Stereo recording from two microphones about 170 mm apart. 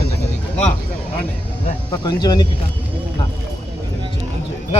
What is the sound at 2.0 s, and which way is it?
Speech, 25° left (ahead or behind).